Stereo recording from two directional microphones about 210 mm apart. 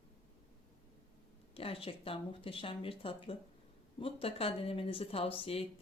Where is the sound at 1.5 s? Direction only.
25° left (ahead or behind).